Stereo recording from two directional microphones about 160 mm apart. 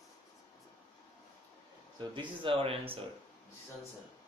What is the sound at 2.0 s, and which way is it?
Speech, 30° right (ahead or behind).